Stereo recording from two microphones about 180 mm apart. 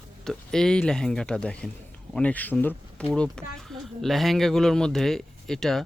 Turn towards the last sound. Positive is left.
turn(degrees=0)  # may be behind; listen again after turning